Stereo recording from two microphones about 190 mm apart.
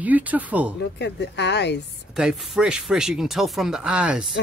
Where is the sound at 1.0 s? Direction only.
65° left (ahead or behind).